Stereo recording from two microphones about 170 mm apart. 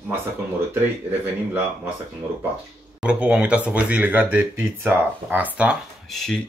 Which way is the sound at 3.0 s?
5° right (ahead or behind).